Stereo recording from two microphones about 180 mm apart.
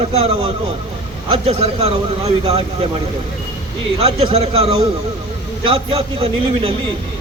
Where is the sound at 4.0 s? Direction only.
35° right (ahead or behind).